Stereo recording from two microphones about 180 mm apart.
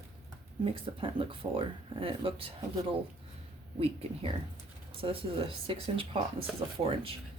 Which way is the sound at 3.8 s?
35° right (ahead or behind).